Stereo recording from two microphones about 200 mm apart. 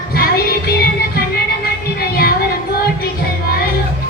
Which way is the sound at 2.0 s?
50° left (ahead or behind).